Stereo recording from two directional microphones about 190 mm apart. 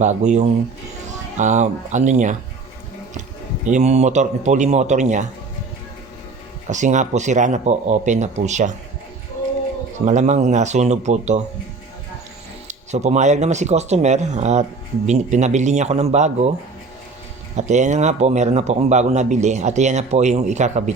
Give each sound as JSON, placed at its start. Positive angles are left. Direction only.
{"t": 0.0, "sound": "speech", "side_deg": -40}
{"t": 3.7, "sound": "speech", "side_deg": -35}
{"t": 6.7, "sound": "speech", "side_deg": -40}
{"t": 10.1, "sound": "speech", "side_deg": -40}
{"t": 12.6, "sound": "speech", "side_deg": -35}
{"t": 17.6, "sound": "speech", "side_deg": -40}